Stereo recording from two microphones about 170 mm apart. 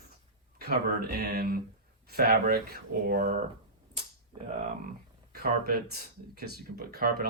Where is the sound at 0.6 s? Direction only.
65° right (ahead or behind).